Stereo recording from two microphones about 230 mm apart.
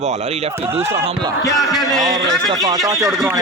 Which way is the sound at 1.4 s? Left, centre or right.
Centre.